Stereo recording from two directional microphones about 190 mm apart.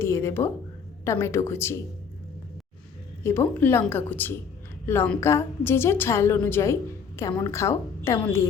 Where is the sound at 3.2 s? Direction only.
10° left (ahead or behind).